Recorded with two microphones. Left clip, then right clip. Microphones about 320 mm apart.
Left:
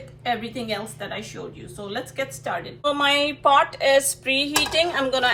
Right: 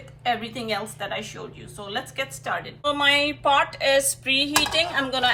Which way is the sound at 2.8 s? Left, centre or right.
Left.